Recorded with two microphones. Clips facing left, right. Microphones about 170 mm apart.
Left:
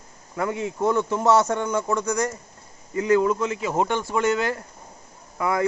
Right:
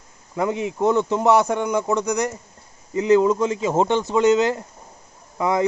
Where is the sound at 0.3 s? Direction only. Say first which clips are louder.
Right 3 dB; 20° right (ahead or behind).